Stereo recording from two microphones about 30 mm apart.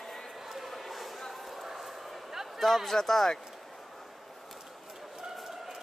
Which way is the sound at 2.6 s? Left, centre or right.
Centre.